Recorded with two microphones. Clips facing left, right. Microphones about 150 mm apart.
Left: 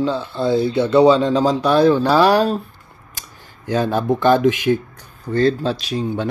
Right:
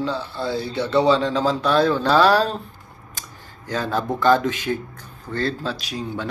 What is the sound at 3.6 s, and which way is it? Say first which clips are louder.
Mantra: left 6 dB; 15° left (ahead or behind).